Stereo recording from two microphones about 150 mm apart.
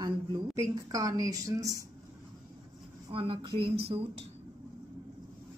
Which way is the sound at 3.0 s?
35° right (ahead or behind).